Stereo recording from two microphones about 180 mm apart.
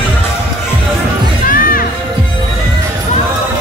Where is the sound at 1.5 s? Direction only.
50° left (ahead or behind).